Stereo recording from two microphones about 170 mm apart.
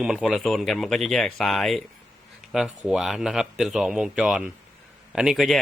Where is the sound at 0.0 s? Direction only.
5° right (ahead or behind).